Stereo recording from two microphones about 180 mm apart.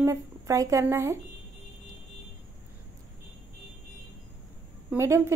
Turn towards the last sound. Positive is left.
turn(degrees=-15)  # may be behind; listen again after turning